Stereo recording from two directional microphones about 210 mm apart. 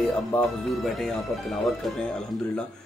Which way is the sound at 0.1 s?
5° left (ahead or behind).